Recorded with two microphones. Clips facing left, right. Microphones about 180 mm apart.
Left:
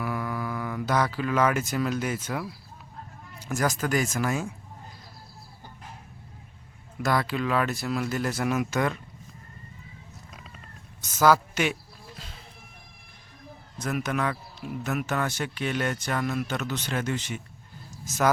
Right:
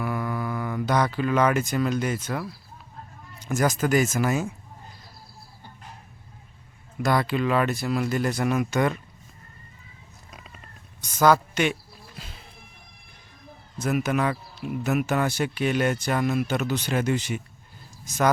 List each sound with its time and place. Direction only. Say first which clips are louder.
0.0 s speech: right 2 dB; centre (ahead or behind)
7.0 s speech: right 3 dB; centre (ahead or behind)
11.0 s a sound: right 1 dB; 5° left (ahead or behind)
13.7 s speech: right 4 dB; 5° right (ahead or behind)